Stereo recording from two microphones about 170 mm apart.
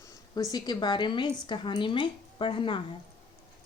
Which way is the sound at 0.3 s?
25° left (ahead or behind).